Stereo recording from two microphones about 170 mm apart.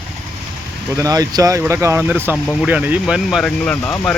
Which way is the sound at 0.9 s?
20° right (ahead or behind).